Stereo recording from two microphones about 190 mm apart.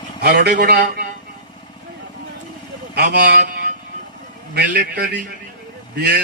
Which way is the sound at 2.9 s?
60° right (ahead or behind).